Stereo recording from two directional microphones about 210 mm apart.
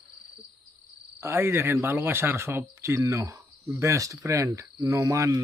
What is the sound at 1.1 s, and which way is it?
Speech, 10° right (ahead or behind).